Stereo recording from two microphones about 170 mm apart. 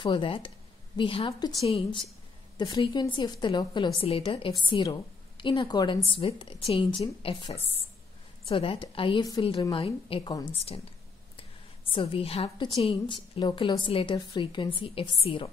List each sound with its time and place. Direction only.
0.0 s a woman's voice: 30° left (ahead or behind)